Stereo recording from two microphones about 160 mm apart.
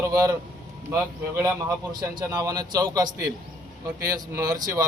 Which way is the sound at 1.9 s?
25° right (ahead or behind).